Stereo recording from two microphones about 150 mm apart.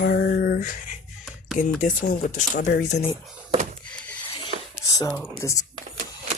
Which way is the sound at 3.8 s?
10° left (ahead or behind).